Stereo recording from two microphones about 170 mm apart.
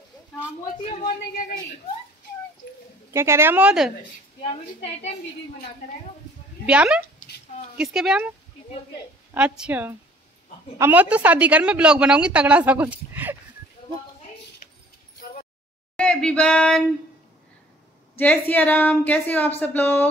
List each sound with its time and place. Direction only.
0.8 s a woman's voice: 40° left (ahead or behind)
3.1 s a woman's voice: 15° right (ahead or behind)
4.4 s a woman's voice: 40° left (ahead or behind)
6.6 s speech: 5° right (ahead or behind)
9.3 s a woman's voice: 10° right (ahead or behind)
16.0 s speech: 5° left (ahead or behind)
18.1 s a woman's voice: 10° left (ahead or behind)